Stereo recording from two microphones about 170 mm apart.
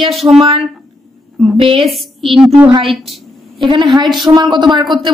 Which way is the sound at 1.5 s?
30° right (ahead or behind).